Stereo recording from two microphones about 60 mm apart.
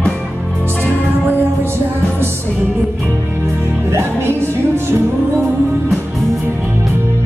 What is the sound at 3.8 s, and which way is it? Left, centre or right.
Music, right.